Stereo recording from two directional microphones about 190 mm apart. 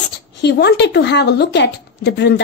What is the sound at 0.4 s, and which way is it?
A child's voice, 60° left (ahead or behind).